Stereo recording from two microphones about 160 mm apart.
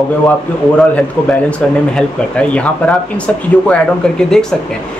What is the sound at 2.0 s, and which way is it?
Speech, 5° left (ahead or behind).